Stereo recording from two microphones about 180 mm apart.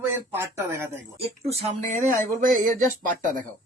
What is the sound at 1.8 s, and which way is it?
Speech, 45° right (ahead or behind).